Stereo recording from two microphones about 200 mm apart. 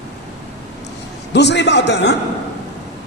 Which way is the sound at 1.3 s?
60° left (ahead or behind).